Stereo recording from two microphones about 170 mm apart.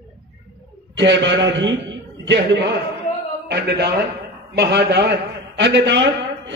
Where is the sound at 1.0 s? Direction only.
90° right.